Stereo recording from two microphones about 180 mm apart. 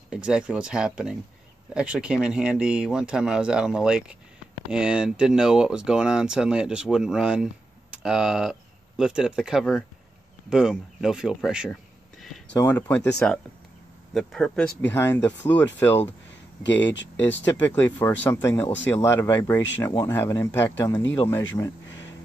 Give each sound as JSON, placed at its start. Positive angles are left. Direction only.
{"t": 0.1, "sound": "speech", "side_deg": -5}
{"t": 12.5, "sound": "speech", "side_deg": 10}
{"t": 14.1, "sound": "speech", "side_deg": 0}
{"t": 14.9, "sound": "speech", "side_deg": 15}
{"t": 16.8, "sound": "speech", "side_deg": 85}
{"t": 17.5, "sound": "speech", "side_deg": 10}